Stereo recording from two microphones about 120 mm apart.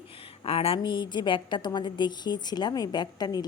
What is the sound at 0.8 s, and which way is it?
A woman's voice, 40° left (ahead or behind).